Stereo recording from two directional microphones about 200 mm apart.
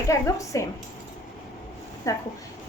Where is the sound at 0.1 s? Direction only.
15° left (ahead or behind).